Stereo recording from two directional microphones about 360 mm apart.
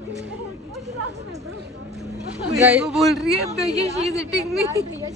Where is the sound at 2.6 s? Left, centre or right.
Centre.